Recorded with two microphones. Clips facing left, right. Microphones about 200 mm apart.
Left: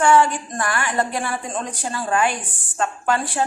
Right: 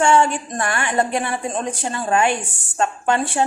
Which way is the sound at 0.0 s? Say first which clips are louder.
Even; 25° right (ahead or behind).